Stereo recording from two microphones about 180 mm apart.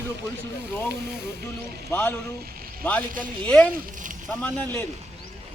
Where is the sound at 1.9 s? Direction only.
10° left (ahead or behind).